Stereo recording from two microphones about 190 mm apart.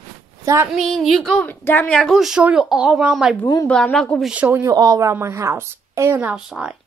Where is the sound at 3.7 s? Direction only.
5° left (ahead or behind).